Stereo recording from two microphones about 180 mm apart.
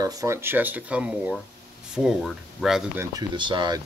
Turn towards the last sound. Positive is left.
turn(degrees=-25)  # may be behind; listen again after turning